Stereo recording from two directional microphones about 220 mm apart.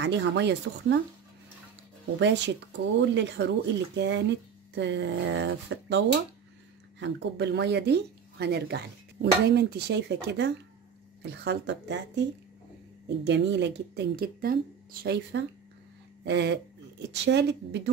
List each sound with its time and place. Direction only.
0.0 s speech: 55° right (ahead or behind)
2.1 s speech: 55° right (ahead or behind)